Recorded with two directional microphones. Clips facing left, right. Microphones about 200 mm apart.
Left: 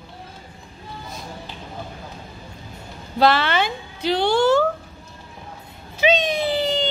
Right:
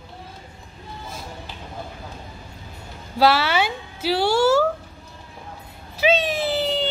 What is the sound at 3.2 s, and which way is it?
A woman's voice, 5° right (ahead or behind).